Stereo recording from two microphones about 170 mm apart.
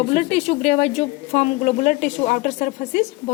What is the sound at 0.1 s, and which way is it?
A woman's voice, 40° left (ahead or behind).